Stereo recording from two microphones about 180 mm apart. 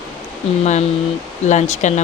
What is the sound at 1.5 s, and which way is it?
Speech, 40° left (ahead or behind).